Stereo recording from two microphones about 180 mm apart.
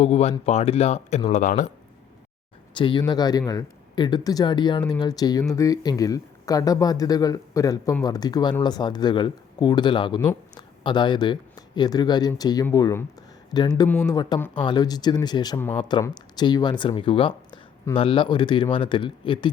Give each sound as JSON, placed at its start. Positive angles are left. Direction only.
{"t": 0.0, "sound": "speech", "side_deg": 35}
{"t": 2.7, "sound": "speech", "side_deg": 25}